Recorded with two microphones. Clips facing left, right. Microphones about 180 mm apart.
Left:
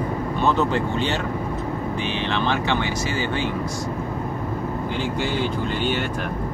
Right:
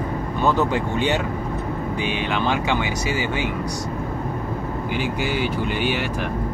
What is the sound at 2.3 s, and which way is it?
Speech, 10° right (ahead or behind).